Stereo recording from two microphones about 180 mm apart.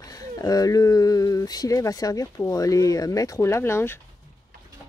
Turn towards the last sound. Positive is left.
turn(degrees=15)  # may be behind; listen again after turning